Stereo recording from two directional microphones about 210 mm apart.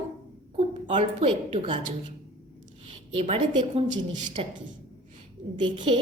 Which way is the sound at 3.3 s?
25° right (ahead or behind).